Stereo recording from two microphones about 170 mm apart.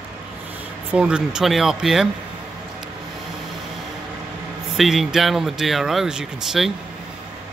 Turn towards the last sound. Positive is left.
turn(degrees=0)  # may be behind; listen again after turning